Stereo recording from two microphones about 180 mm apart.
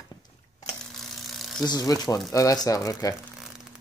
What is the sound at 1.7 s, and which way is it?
Speech, 20° left (ahead or behind).